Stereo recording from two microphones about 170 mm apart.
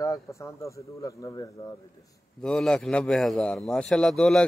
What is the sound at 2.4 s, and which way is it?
A man's voice, 5° left (ahead or behind).